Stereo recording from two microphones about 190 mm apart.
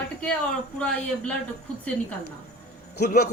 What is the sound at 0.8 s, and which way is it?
Speech, 5° left (ahead or behind).